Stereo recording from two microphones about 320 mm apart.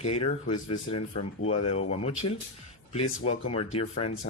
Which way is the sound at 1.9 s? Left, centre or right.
Centre.